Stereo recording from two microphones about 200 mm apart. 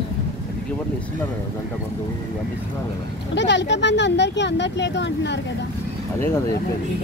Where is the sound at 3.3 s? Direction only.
60° left (ahead or behind).